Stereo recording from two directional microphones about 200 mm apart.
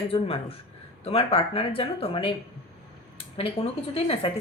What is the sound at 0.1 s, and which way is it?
A woman's voice, 30° left (ahead or behind).